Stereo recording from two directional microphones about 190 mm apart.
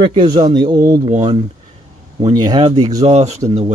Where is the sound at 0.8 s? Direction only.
40° right (ahead or behind).